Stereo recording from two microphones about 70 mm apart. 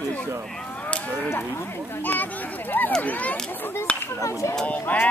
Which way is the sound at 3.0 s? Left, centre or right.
Left.